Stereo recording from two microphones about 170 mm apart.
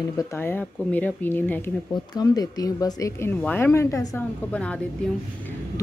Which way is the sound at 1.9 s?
25° left (ahead or behind).